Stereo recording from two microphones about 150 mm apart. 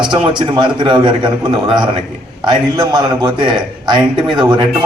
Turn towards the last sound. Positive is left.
turn(degrees=-30)  # may be behind; listen again after turning